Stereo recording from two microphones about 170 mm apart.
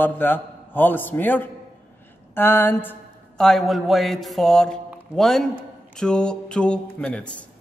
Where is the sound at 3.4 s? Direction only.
Centre (ahead or behind).